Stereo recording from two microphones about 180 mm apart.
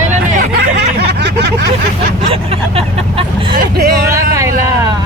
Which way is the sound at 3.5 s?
60° right (ahead or behind).